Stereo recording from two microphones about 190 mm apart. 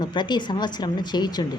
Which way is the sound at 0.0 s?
25° left (ahead or behind).